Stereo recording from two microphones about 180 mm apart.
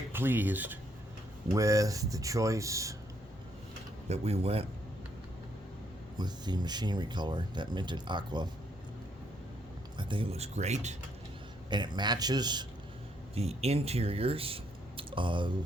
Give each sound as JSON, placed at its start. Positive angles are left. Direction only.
{"t": 0.1, "sound": "speech", "side_deg": -10}
{"t": 4.1, "sound": "speech", "side_deg": -35}
{"t": 6.1, "sound": "speech", "side_deg": -25}
{"t": 10.0, "sound": "speech", "side_deg": -30}
{"t": 11.7, "sound": "speech", "side_deg": -25}
{"t": 13.3, "sound": "speech", "side_deg": -35}